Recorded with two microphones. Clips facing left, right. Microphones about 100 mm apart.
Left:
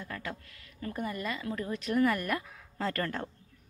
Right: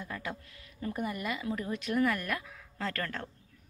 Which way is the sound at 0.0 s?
15° right (ahead or behind).